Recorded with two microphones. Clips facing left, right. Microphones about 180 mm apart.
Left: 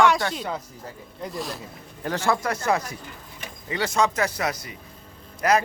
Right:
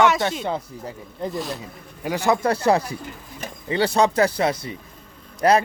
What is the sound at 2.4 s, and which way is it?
A man's voice, 30° right (ahead or behind).